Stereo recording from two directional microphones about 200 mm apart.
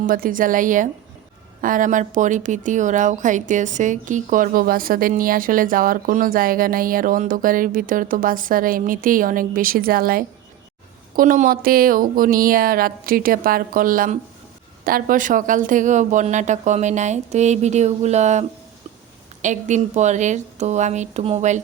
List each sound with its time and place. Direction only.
0.1 s speech: 45° right (ahead or behind)